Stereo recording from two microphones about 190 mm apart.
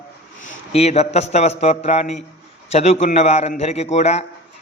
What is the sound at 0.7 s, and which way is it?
A man's voice, 35° left (ahead or behind).